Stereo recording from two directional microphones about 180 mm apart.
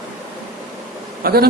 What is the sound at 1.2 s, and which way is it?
Speech, 55° right (ahead or behind).